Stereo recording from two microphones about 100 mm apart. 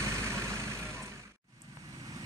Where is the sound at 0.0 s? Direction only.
30° right (ahead or behind).